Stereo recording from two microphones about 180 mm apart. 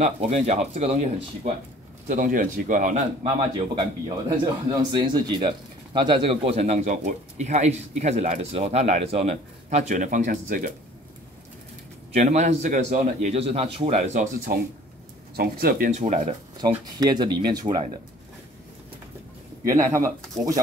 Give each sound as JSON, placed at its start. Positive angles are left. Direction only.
{"t": 0.0, "sound": "a man's voice", "side_deg": -40}
{"t": 4.9, "sound": "speech", "side_deg": -25}
{"t": 12.1, "sound": "speech", "side_deg": -40}
{"t": 15.3, "sound": "a man's voice", "side_deg": -55}
{"t": 16.6, "sound": "speech", "side_deg": -20}
{"t": 19.6, "sound": "speech", "side_deg": -15}